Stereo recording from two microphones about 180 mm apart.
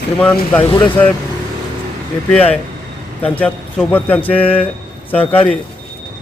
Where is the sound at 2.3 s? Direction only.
10° left (ahead or behind).